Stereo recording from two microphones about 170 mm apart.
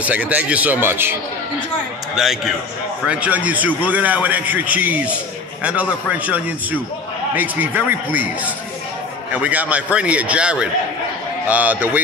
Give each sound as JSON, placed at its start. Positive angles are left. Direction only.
{"t": 0.0, "sound": "a man's voice", "side_deg": -10}
{"t": 2.1, "sound": "a man's voice", "side_deg": 0}
{"t": 9.3, "sound": "a man's voice", "side_deg": -10}